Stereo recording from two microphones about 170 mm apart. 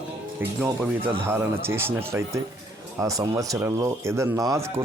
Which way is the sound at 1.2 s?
15° right (ahead or behind).